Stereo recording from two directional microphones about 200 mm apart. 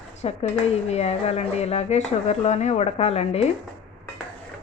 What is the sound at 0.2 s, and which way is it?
A woman's voice, 30° left (ahead or behind).